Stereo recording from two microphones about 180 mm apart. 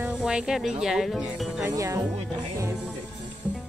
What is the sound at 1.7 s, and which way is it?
Speech, 15° right (ahead or behind).